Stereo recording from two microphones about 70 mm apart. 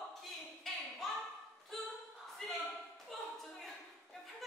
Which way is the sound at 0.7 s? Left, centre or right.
Centre.